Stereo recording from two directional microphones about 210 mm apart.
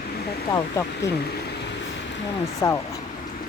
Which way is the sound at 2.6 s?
15° left (ahead or behind).